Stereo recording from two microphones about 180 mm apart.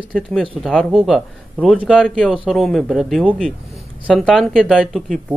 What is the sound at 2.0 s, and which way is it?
Speech, 5° left (ahead or behind).